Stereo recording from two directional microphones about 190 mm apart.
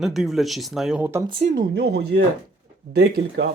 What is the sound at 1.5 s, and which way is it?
Speech, 60° right (ahead or behind).